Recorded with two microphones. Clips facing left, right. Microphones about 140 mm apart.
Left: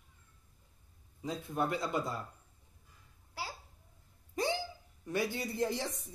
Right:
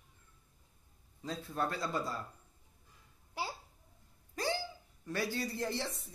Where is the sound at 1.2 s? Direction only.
20° left (ahead or behind).